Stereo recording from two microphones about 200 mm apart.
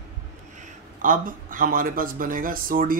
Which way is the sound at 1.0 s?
40° right (ahead or behind).